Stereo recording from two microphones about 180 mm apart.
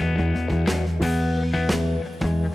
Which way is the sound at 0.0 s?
Centre (ahead or behind).